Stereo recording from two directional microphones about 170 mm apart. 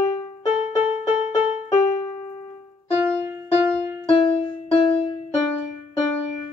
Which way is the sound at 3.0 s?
15° right (ahead or behind).